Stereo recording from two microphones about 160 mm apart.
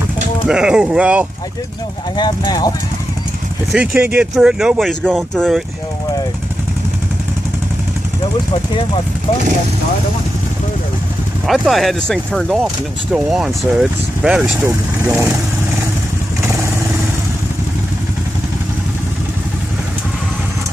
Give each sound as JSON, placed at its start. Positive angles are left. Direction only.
{"t": 0.5, "sound": "speech", "side_deg": -5}
{"t": 2.1, "sound": "speech", "side_deg": 25}
{"t": 3.7, "sound": "speech", "side_deg": -10}
{"t": 11.4, "sound": "speech", "side_deg": 0}
{"t": 15.0, "sound": "speech", "side_deg": -20}